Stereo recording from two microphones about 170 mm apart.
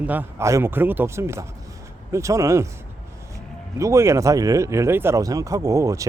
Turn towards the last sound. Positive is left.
turn(degrees=-20)  # may be behind; listen again after turning